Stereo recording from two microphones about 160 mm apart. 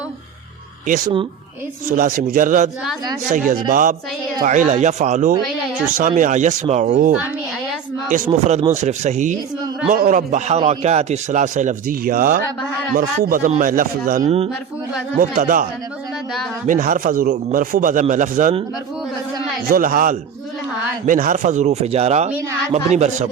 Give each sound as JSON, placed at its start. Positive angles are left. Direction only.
{"t": 1.9, "sound": "a man's voice", "side_deg": -60}
{"t": 8.3, "sound": "a man's voice", "side_deg": -40}
{"t": 14.3, "sound": "speech", "side_deg": -40}
{"t": 15.2, "sound": "speech", "side_deg": -55}
{"t": 16.6, "sound": "a man's voice", "side_deg": -55}
{"t": 19.6, "sound": "a man's voice", "side_deg": -60}